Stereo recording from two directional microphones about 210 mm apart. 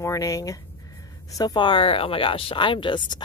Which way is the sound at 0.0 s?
15° left (ahead or behind).